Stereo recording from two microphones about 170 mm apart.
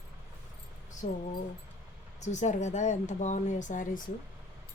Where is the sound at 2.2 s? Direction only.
45° left (ahead or behind).